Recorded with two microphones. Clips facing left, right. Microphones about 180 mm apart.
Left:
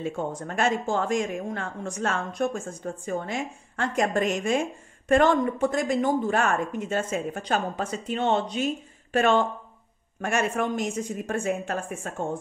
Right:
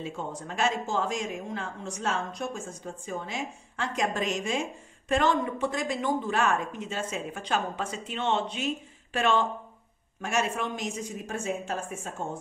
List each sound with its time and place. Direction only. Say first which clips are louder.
0.0 s a woman's voice: left 6 dB; 50° left (ahead or behind)